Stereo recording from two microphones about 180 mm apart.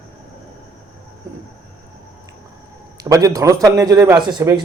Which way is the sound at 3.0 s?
20° right (ahead or behind).